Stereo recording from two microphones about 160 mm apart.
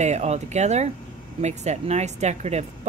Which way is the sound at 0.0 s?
45° right (ahead or behind).